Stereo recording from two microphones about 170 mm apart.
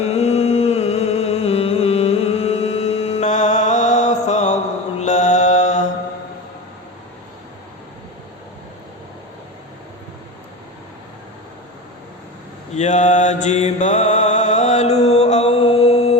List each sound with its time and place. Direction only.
0.0 s music: 35° left (ahead or behind)
12.7 s mantra: 45° left (ahead or behind)